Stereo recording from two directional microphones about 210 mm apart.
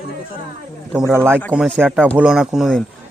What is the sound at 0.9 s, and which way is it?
A man's voice, 10° right (ahead or behind).